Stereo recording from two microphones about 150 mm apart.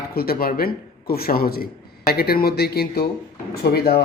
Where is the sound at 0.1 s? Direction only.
90° left.